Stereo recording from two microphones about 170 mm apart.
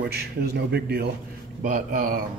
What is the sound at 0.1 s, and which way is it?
Speech, 70° right (ahead or behind).